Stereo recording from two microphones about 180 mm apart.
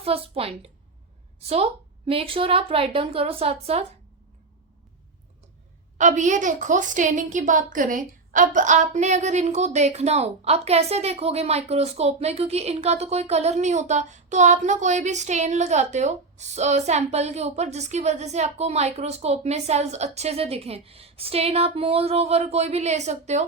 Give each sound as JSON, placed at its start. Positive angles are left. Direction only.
{"t": 0.0, "sound": "a woman's voice", "side_deg": -35}
{"t": 6.0, "sound": "a woman's voice", "side_deg": -45}